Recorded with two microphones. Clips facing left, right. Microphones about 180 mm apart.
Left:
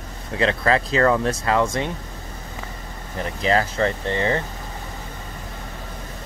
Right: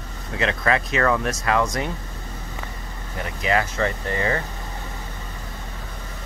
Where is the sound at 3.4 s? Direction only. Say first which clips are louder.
Left 2 dB; 30° left (ahead or behind).